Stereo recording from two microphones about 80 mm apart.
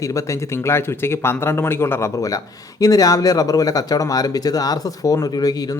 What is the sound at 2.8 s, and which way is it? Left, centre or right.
Speech, left.